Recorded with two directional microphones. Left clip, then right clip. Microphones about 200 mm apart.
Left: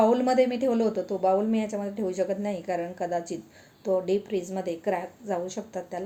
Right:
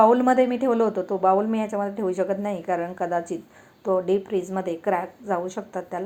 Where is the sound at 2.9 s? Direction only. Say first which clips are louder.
Right 4 dB; 45° right (ahead or behind).